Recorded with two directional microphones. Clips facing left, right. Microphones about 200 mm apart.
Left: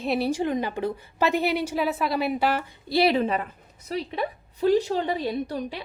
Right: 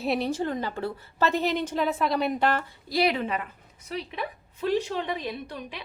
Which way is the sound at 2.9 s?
30° left (ahead or behind).